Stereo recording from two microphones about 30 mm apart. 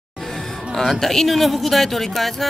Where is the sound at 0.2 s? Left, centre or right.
Centre.